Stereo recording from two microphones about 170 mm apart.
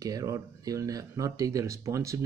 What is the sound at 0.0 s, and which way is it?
Speech, 20° right (ahead or behind).